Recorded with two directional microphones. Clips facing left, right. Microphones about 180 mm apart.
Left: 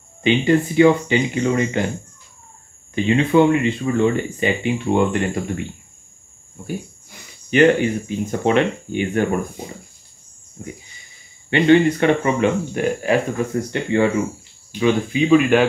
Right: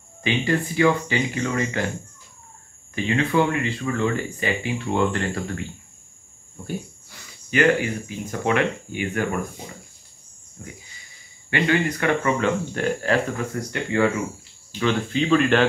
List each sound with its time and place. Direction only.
0.2 s speech: 20° left (ahead or behind)
2.9 s speech: 20° left (ahead or behind)
7.1 s speech: 25° left (ahead or behind)
10.6 s speech: 25° left (ahead or behind)
14.8 s speech: 10° left (ahead or behind)